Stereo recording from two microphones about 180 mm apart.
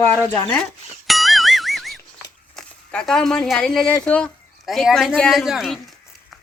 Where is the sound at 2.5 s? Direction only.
5° left (ahead or behind).